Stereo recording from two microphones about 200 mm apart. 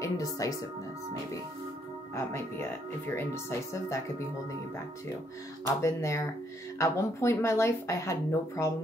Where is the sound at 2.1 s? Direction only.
15° left (ahead or behind).